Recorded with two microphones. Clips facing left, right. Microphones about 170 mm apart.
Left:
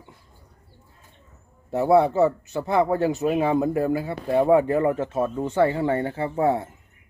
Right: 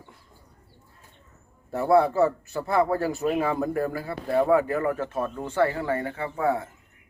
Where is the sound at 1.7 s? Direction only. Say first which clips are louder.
Left 2 dB; 20° left (ahead or behind).